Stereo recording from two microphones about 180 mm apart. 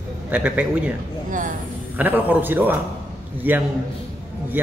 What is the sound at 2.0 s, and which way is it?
A man's voice, 10° right (ahead or behind).